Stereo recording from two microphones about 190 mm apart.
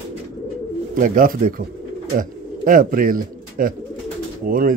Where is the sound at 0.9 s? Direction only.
45° right (ahead or behind).